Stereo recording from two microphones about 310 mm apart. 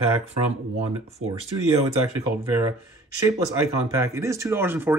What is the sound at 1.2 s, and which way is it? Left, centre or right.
Speech, right.